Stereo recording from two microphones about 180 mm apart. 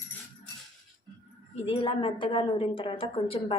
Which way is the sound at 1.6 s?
30° left (ahead or behind).